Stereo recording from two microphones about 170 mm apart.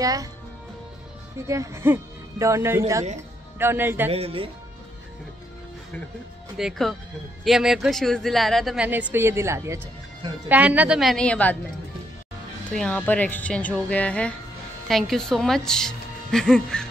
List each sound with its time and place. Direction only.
0.0 s speech: 20° right (ahead or behind)
1.5 s speech: 15° right (ahead or behind)
4.1 s speech: 35° right (ahead or behind)
6.5 s speech: centre (ahead or behind)
12.7 s speech: 5° left (ahead or behind)